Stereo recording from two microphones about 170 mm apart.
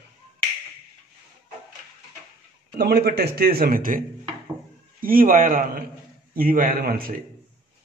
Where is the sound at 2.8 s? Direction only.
65° right (ahead or behind).